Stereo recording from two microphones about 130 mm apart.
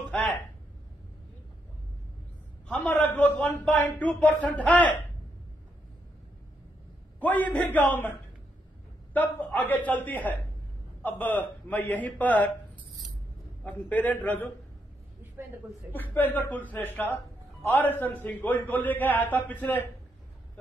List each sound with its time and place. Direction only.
2.7 s a man's voice: 10° left (ahead or behind)
7.2 s a man's voice: 10° left (ahead or behind)
9.1 s a man's voice: 15° left (ahead or behind)
13.7 s a man's voice: 10° left (ahead or behind)
15.4 s speech: 15° right (ahead or behind)
15.9 s a man's voice: 15° left (ahead or behind)